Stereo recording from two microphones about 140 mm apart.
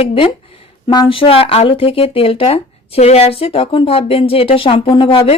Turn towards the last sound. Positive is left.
turn(degrees=40)  # may be behind; listen again after turning